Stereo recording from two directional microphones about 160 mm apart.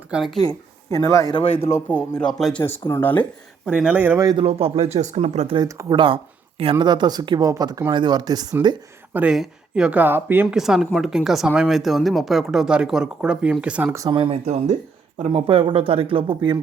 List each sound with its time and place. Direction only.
0.1 s speech: centre (ahead or behind)
0.3 s speech: 20° left (ahead or behind)
2.0 s speech: 5° left (ahead or behind)
3.7 s speech: 5° right (ahead or behind)
4.2 s speech: 25° right (ahead or behind)
4.4 s speech: 35° right (ahead or behind)
5.5 s speech: 25° right (ahead or behind)
9.1 s speech: 5° right (ahead or behind)
10.6 s speech: 5° right (ahead or behind)
13.9 s speech: 25° right (ahead or behind)
14.4 s speech: 45° right (ahead or behind)